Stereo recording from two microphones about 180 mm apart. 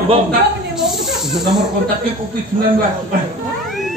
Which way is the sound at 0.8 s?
Centre (ahead or behind).